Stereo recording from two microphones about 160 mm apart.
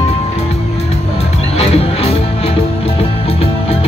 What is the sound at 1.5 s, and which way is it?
Music, 40° left (ahead or behind).